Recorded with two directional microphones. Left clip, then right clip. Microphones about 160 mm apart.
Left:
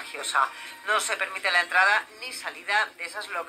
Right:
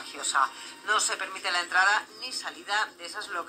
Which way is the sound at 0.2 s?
20° left (ahead or behind).